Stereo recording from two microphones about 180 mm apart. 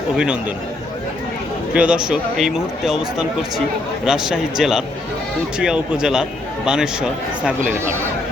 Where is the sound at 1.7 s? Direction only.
5° right (ahead or behind).